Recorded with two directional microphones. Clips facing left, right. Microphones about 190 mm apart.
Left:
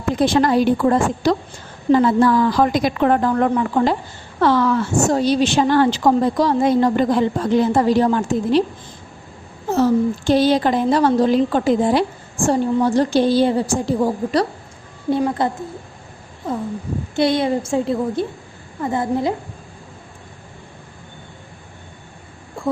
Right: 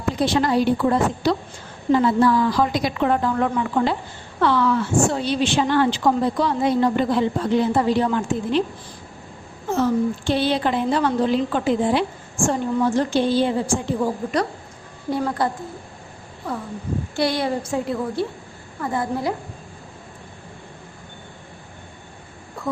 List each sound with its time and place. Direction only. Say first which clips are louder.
0.2 s a woman's voice: left 4 dB; 50° left (ahead or behind)
9.6 s a woman's voice: left 4 dB; 40° left (ahead or behind)
15.1 s a woman's voice: left 4 dB; 25° left (ahead or behind)
16.4 s a woman's voice: left 4 dB; 20° left (ahead or behind)